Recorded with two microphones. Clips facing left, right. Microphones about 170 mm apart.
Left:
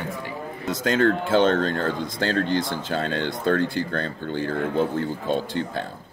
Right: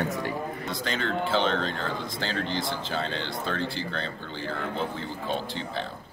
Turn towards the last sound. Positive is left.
turn(degrees=50)  # may be behind; listen again after turning